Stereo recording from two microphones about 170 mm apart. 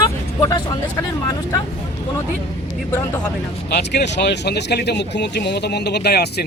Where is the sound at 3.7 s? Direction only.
75° left (ahead or behind).